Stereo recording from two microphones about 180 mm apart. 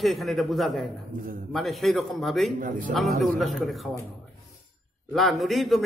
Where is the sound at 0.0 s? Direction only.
Centre (ahead or behind).